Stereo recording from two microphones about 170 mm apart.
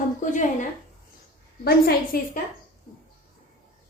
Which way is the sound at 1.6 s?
65° left (ahead or behind).